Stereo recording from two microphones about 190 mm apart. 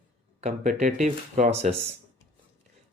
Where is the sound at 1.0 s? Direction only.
40° right (ahead or behind).